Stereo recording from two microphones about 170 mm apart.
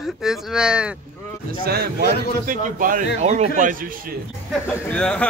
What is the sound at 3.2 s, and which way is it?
Speech, 40° right (ahead or behind).